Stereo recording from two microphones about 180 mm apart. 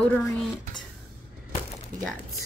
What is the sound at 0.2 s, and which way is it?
Speech, centre (ahead or behind).